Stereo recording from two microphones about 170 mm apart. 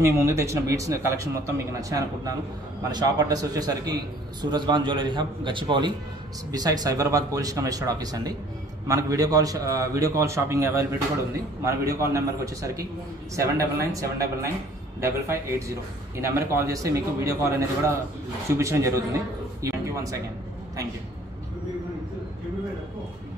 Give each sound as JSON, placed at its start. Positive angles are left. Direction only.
{"t": 0.0, "sound": "a man's voice", "side_deg": -15}
{"t": 19.6, "sound": "music", "side_deg": -20}